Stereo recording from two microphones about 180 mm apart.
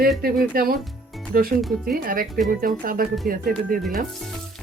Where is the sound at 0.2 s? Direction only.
55° right (ahead or behind).